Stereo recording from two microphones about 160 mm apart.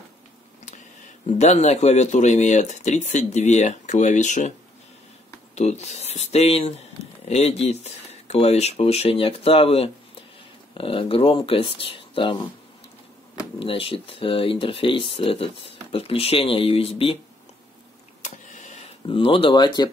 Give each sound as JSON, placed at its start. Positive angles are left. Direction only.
{"t": 0.7, "sound": "speech", "side_deg": 50}
{"t": 5.5, "sound": "speech", "side_deg": 45}
{"t": 18.2, "sound": "a sound", "side_deg": 50}
{"t": 19.0, "sound": "speech", "side_deg": 35}